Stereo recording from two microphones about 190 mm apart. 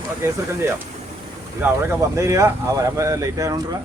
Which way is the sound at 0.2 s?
15° right (ahead or behind).